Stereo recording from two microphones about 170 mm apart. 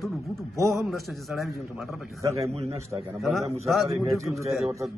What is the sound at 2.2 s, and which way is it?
Speech, 20° right (ahead or behind).